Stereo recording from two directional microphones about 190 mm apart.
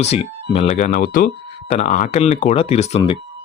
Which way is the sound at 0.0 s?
35° left (ahead or behind).